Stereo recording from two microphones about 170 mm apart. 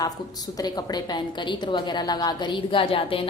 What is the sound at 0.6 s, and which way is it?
A woman's voice, 20° left (ahead or behind).